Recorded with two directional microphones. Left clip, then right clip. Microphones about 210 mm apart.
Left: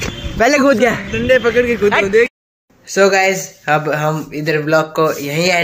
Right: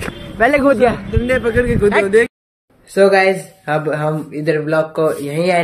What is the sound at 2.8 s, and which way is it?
Speech, centre (ahead or behind).